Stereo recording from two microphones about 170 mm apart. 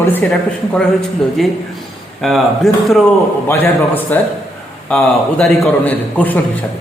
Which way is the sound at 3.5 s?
15° left (ahead or behind).